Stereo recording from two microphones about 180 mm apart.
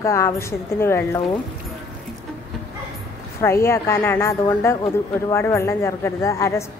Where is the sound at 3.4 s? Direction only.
15° left (ahead or behind).